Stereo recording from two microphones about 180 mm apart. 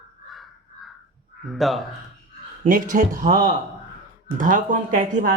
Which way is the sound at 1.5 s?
Centre (ahead or behind).